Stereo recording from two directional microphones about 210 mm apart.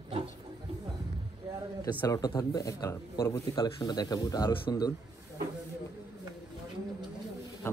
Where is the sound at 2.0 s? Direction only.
15° left (ahead or behind).